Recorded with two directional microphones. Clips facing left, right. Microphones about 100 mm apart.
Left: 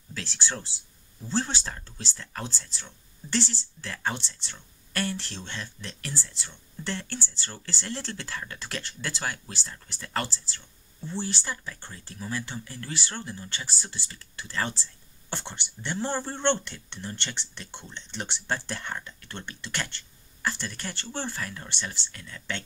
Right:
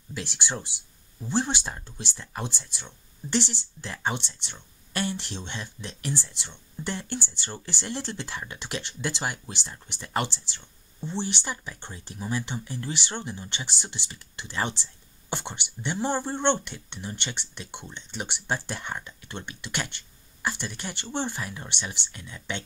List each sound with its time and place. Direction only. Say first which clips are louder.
0.1 s speech: right 2 dB; 15° right (ahead or behind)